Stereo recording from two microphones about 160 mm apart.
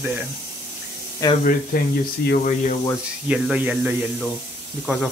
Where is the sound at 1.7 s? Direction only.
60° left (ahead or behind).